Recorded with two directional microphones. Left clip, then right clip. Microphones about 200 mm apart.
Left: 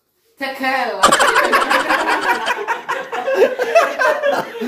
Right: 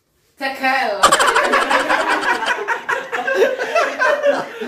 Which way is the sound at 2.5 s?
10° left (ahead or behind).